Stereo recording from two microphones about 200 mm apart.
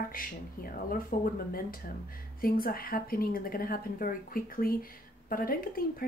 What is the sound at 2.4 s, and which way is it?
A woman's voice, 45° left (ahead or behind).